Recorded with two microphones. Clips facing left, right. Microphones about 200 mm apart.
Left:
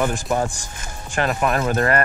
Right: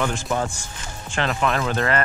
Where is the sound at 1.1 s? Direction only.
45° left (ahead or behind).